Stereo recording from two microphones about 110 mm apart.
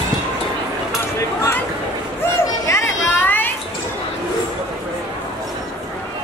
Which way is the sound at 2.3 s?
20° left (ahead or behind).